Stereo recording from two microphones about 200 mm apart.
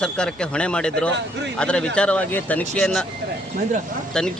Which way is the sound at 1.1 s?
60° right (ahead or behind).